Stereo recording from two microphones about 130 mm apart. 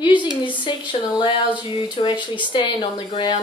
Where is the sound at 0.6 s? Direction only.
40° left (ahead or behind).